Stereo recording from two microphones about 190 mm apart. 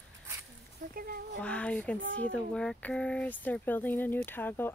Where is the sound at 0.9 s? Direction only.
50° right (ahead or behind).